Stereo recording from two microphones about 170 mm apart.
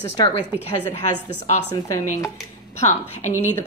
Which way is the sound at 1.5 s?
45° left (ahead or behind).